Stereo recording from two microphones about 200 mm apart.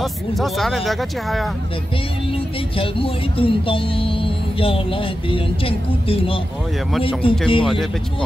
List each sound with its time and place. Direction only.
0.0 s speech: centre (ahead or behind)
2.8 s speech: 25° left (ahead or behind)